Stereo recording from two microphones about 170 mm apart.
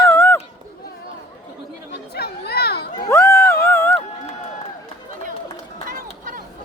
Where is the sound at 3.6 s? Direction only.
15° left (ahead or behind).